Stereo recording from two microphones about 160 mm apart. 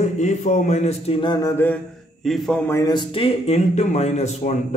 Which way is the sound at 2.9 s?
30° left (ahead or behind).